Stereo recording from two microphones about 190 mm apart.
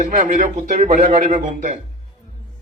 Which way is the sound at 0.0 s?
40° right (ahead or behind).